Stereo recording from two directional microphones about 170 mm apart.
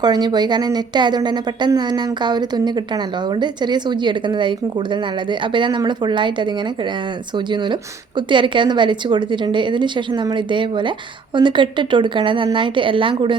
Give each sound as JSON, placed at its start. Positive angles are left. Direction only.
{"t": 0.0, "sound": "a woman's voice", "side_deg": -25}